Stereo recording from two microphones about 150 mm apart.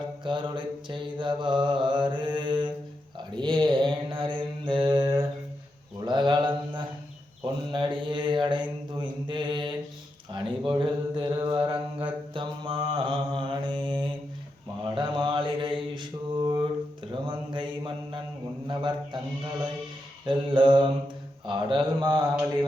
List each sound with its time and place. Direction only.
0.3 s mantra: 30° right (ahead or behind)
20.2 s mantra: 30° right (ahead or behind)